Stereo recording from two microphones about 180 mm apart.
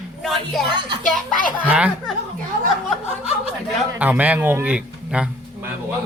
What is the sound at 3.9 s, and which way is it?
Speech, 10° right (ahead or behind).